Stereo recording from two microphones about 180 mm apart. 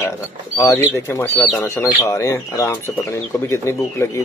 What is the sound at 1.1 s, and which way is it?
Speech, 10° left (ahead or behind).